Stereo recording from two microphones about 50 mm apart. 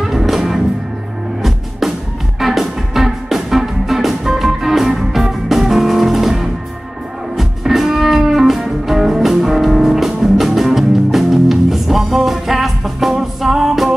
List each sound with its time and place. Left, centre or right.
0.0 s music: centre
2.4 s music: centre